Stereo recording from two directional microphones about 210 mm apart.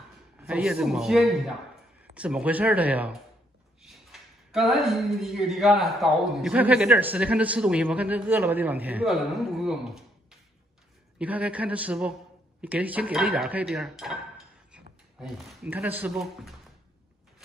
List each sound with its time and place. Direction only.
0.4 s a woman's voice: 5° right (ahead or behind)
11.1 s a woman's voice: 5° right (ahead or behind)
14.7 s a sound: centre (ahead or behind)
15.7 s speech: 10° right (ahead or behind)